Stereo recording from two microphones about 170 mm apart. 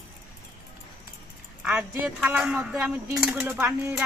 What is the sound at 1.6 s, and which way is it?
A woman's voice, 5° right (ahead or behind).